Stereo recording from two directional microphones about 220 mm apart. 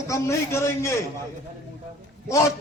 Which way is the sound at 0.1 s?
15° left (ahead or behind).